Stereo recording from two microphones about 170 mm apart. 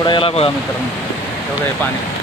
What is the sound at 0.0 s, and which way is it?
Speech, 30° left (ahead or behind).